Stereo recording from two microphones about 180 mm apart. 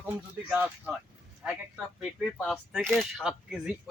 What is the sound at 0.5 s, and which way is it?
A man's voice, 5° right (ahead or behind).